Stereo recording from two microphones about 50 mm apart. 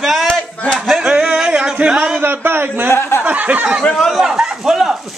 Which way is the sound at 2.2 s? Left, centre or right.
Right.